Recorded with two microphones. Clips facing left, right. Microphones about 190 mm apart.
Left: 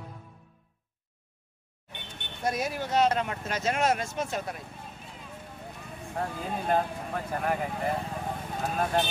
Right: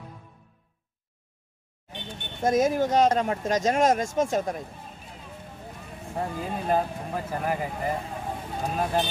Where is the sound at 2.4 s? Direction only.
45° right (ahead or behind).